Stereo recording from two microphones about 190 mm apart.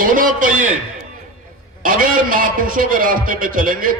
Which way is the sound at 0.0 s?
45° right (ahead or behind).